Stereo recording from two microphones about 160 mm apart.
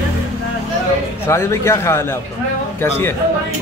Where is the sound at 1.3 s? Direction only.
15° left (ahead or behind).